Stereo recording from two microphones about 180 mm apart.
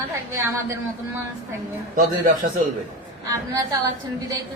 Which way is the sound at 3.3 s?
20° right (ahead or behind).